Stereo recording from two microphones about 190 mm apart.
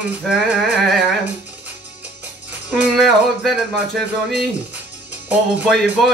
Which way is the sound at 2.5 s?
10° right (ahead or behind).